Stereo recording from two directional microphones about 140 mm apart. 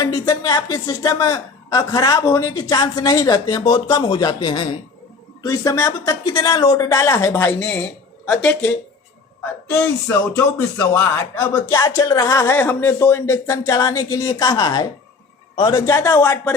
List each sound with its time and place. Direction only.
0.0 s speech: 25° left (ahead or behind)